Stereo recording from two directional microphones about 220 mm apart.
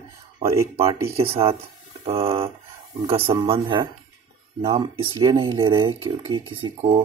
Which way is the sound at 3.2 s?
10° right (ahead or behind).